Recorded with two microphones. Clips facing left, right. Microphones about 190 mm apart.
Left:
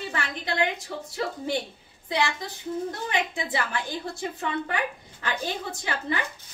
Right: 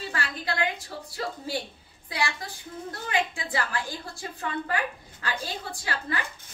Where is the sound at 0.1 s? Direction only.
20° left (ahead or behind).